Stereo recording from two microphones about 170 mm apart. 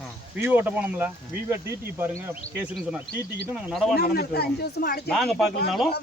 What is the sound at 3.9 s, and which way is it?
Speech, 65° left (ahead or behind).